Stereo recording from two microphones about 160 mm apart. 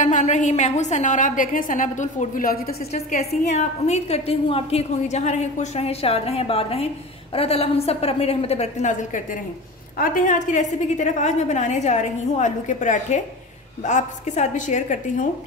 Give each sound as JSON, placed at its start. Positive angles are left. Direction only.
{"t": 0.0, "sound": "a woman's voice", "side_deg": 50}
{"t": 2.9, "sound": "a woman's voice", "side_deg": 45}